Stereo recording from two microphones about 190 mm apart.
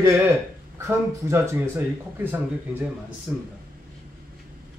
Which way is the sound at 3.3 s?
10° right (ahead or behind).